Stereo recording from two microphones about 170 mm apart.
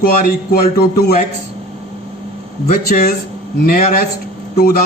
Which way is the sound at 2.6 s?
55° left (ahead or behind).